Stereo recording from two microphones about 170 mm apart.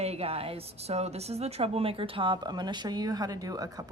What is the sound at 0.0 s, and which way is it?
A woman's voice, 35° right (ahead or behind).